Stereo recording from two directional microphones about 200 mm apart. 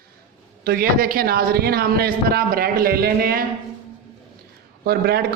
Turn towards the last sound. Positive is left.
turn(degrees=-50)  # may be behind; listen again after turning